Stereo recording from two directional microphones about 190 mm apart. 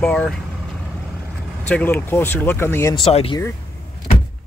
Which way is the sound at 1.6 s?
10° left (ahead or behind).